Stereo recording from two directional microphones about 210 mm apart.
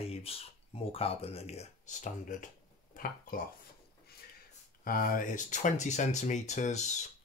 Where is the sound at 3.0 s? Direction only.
40° left (ahead or behind).